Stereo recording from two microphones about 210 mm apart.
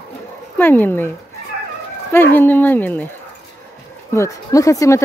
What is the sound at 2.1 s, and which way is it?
Speech, 10° left (ahead or behind).